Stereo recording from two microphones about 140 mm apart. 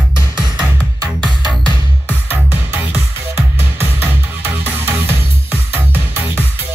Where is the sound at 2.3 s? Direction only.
10° right (ahead or behind).